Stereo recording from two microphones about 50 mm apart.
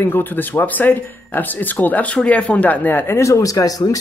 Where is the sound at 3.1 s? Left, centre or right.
Left.